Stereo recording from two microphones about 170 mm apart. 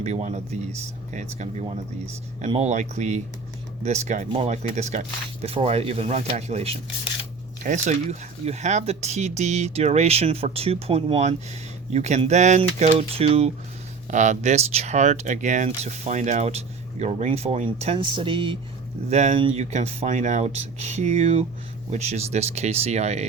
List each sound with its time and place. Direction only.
0.0 s speech: 40° right (ahead or behind)
19.1 s speech: 40° right (ahead or behind)